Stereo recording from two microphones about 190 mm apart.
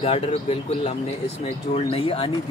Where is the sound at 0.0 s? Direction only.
30° left (ahead or behind).